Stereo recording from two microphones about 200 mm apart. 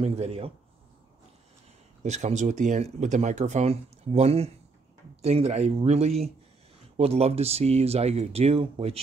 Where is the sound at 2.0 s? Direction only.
35° right (ahead or behind).